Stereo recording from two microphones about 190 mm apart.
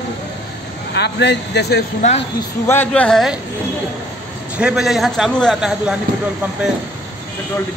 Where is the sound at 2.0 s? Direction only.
35° left (ahead or behind).